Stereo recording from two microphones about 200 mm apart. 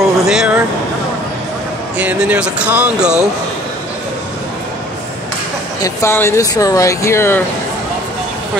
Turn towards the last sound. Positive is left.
turn(degrees=10)  # may be behind; listen again after turning